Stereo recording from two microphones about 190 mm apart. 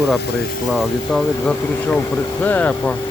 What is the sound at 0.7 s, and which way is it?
Speech, centre (ahead or behind).